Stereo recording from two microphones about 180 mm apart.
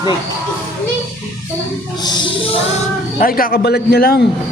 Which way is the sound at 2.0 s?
30° left (ahead or behind).